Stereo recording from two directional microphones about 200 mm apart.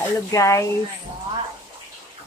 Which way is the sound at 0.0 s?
15° left (ahead or behind).